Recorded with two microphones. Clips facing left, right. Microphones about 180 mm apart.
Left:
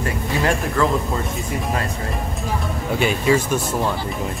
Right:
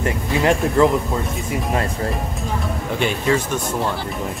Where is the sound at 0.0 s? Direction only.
20° right (ahead or behind).